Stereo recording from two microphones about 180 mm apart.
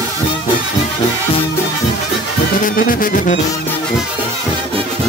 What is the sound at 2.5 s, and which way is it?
Music, 50° left (ahead or behind).